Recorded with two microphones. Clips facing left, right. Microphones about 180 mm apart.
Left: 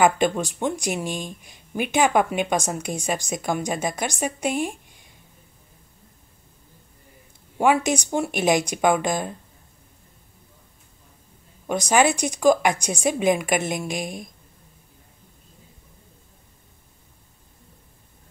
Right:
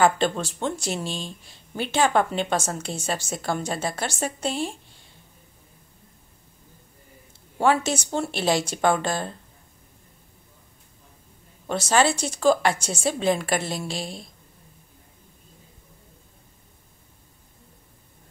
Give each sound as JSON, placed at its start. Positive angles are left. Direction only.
{"t": 0.0, "sound": "speech", "side_deg": 15}
{"t": 7.5, "sound": "speech", "side_deg": 15}
{"t": 11.6, "sound": "speech", "side_deg": 15}